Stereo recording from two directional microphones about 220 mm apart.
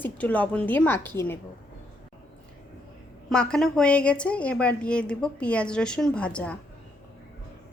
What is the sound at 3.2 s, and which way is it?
A woman's voice, 5° left (ahead or behind).